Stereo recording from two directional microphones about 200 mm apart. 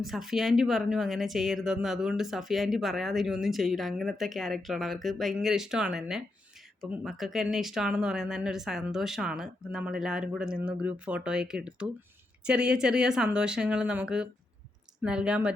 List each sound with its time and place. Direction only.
0.0 s speech: centre (ahead or behind)